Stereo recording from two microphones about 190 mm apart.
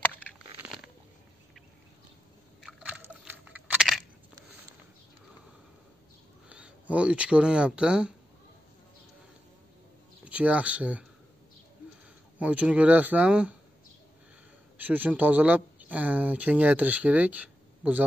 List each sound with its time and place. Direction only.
0.0 s a sound: 5° left (ahead or behind)
2.6 s a sound: 5° right (ahead or behind)
6.5 s speech: 5° right (ahead or behind)
10.2 s speech: 5° right (ahead or behind)
12.4 s speech: 5° right (ahead or behind)
14.8 s speech: 10° right (ahead or behind)